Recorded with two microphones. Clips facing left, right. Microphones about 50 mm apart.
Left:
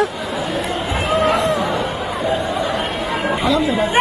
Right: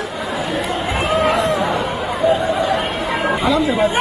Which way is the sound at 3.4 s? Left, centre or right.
Right.